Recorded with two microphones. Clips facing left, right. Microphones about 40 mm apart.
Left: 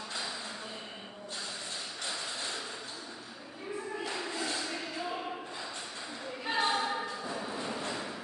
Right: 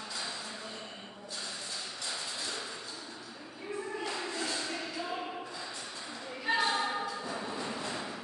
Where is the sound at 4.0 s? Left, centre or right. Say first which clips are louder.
Even; centre.